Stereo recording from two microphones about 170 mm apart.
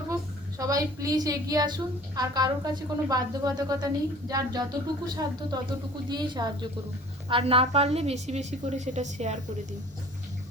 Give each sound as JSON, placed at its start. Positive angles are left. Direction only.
{"t": 0.6, "sound": "a woman's voice", "side_deg": -20}